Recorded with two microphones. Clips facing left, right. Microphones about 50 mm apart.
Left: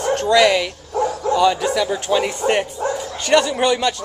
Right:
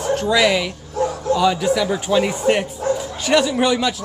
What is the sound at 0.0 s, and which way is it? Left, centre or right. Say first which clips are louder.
A man's voice: left 2 dB; centre.